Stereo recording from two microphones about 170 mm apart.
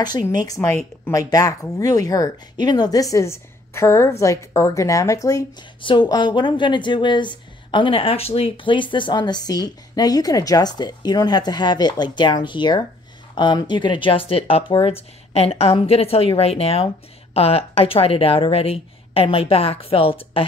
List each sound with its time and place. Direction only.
0.3 s speech: 25° left (ahead or behind)